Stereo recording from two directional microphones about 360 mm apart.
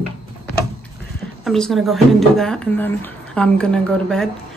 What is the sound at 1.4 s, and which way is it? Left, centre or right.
Speech, centre.